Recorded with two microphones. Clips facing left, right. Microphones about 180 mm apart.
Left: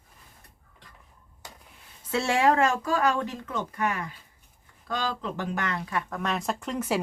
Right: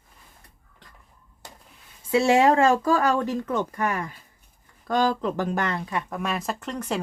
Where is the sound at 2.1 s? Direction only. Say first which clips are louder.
Right 5 dB; 15° right (ahead or behind); by 5.9 s 30° right (ahead or behind).